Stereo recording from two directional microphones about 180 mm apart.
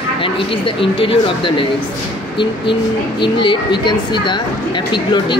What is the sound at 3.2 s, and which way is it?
A woman's voice, 25° left (ahead or behind).